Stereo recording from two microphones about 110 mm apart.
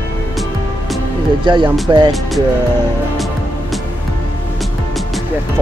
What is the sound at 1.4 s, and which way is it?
Speech, 45° right (ahead or behind).